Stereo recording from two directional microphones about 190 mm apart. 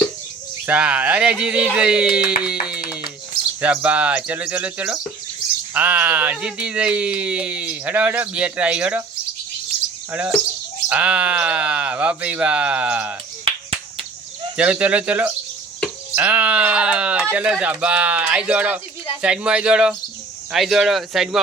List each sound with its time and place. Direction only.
0.7 s speech: 5° right (ahead or behind)
2.4 s music: 5° right (ahead or behind)
3.6 s speech: 10° right (ahead or behind)
10.1 s speech: 10° right (ahead or behind)
13.4 s finger snapping: 30° right (ahead or behind)
14.5 s speech: 5° right (ahead or behind)
16.1 s bleat: 5° right (ahead or behind)
17.3 s speech: 5° right (ahead or behind)